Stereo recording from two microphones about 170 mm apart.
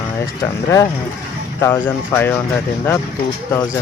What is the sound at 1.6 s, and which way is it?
Speech, 15° left (ahead or behind).